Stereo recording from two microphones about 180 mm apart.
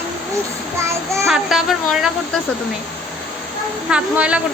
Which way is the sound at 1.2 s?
Centre (ahead or behind).